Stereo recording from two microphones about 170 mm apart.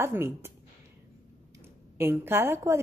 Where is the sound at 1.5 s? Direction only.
15° right (ahead or behind).